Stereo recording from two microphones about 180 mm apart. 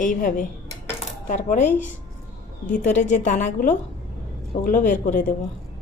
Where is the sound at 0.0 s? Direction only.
45° left (ahead or behind).